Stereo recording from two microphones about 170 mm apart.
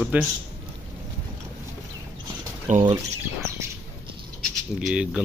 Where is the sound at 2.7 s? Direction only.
45° right (ahead or behind).